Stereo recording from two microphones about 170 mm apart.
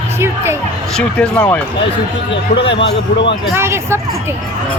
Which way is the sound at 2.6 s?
90° left.